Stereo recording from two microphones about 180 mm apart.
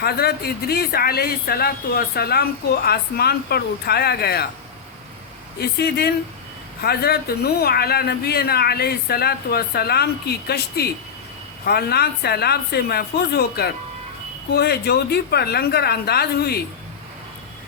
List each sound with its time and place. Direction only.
0.0 s speech: 60° left (ahead or behind)
5.5 s speech: 65° left (ahead or behind)